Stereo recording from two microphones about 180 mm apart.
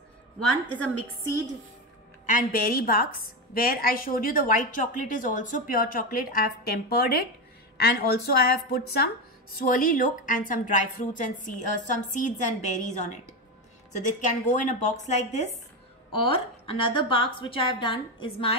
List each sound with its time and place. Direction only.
0.7 s a woman's voice: 15° left (ahead or behind)
2.2 s a woman's voice: 50° left (ahead or behind)
9.6 s a woman's voice: 50° left (ahead or behind); by 18.5 s 30° left (ahead or behind)